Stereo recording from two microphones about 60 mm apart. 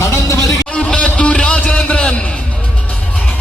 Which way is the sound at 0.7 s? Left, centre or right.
Centre.